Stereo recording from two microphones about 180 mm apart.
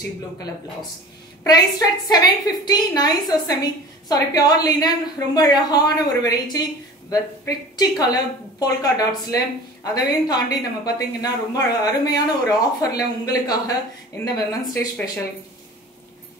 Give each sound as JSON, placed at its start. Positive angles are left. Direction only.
{"t": 2.0, "sound": "speech", "side_deg": 20}